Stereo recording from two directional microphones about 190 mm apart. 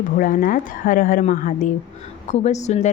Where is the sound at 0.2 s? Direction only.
45° left (ahead or behind).